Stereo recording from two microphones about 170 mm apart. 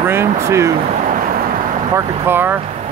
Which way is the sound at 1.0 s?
55° right (ahead or behind).